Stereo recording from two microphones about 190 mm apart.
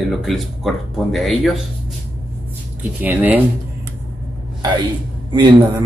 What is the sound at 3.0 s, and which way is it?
Speech, 10° right (ahead or behind).